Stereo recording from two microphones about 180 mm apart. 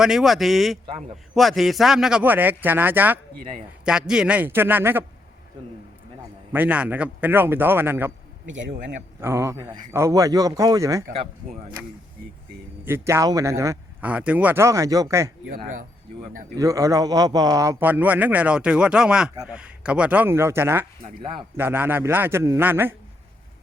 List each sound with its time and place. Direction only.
0.0 s speech: centre (ahead or behind)
6.5 s speech: 10° right (ahead or behind)
9.2 s speech: 15° right (ahead or behind)
12.8 s speech: 15° right (ahead or behind)
15.4 s speech: 45° right (ahead or behind)
16.6 s speech: 20° right (ahead or behind)